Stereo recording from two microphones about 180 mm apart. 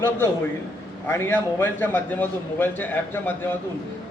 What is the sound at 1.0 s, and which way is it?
A man's voice, 10° left (ahead or behind).